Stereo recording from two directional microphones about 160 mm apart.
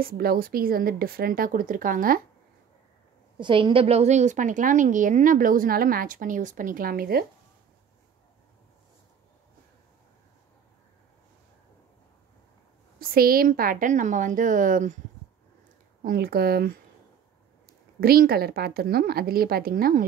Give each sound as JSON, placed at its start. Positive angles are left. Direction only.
{"t": 0.0, "sound": "a woman's voice", "side_deg": -70}
{"t": 3.3, "sound": "a woman's voice", "side_deg": -30}
{"t": 13.0, "sound": "a woman's voice", "side_deg": -70}
{"t": 16.0, "sound": "a woman's voice", "side_deg": -65}
{"t": 18.0, "sound": "a woman's voice", "side_deg": -70}